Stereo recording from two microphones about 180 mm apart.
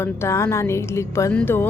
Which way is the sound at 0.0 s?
15° left (ahead or behind).